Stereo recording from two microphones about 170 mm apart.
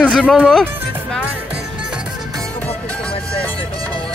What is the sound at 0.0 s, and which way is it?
Speech, 5° left (ahead or behind).